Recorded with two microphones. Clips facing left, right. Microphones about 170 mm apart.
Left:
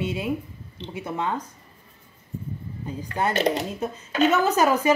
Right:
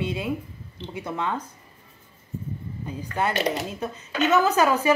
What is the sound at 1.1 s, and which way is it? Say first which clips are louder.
Speech: left 1 dB; 15° left (ahead or behind).